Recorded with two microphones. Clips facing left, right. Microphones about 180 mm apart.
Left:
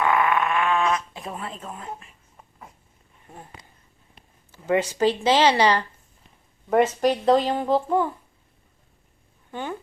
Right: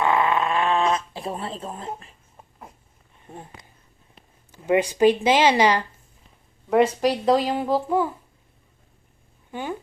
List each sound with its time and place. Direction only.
0.0 s a sound: 25° right (ahead or behind)
4.5 s speech: 15° right (ahead or behind)
9.5 s speech: 10° right (ahead or behind)